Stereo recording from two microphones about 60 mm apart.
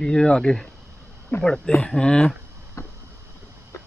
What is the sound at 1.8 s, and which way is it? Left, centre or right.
Speech, centre.